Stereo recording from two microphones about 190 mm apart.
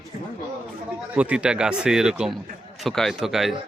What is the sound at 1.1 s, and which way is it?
Speech, 5° right (ahead or behind).